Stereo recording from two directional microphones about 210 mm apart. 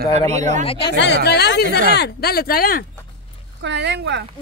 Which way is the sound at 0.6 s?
25° left (ahead or behind).